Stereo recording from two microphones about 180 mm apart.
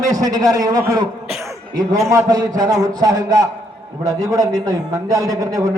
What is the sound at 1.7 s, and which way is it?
A man's voice, 20° right (ahead or behind).